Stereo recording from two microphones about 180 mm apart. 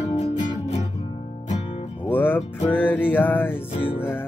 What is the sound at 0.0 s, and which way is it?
Music, 40° left (ahead or behind).